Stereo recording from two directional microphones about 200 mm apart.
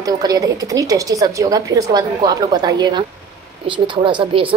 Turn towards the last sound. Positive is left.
turn(degrees=-25)  # may be behind; listen again after turning